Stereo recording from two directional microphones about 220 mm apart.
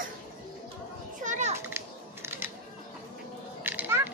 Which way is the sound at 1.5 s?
10° right (ahead or behind).